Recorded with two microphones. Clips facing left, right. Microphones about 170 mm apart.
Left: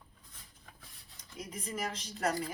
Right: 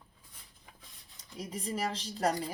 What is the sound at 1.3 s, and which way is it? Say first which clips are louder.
Speech: right 3 dB; 35° right (ahead or behind).